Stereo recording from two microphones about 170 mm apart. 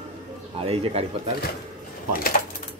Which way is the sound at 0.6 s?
35° right (ahead or behind).